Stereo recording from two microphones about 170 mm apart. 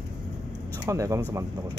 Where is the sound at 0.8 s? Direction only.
20° right (ahead or behind).